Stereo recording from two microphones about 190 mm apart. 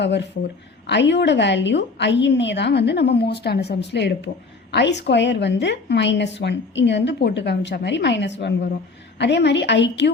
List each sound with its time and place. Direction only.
0.0 s a woman's voice: 65° left (ahead or behind)